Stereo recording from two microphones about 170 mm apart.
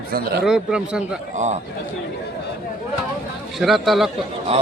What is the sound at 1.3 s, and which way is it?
Speech, 45° right (ahead or behind).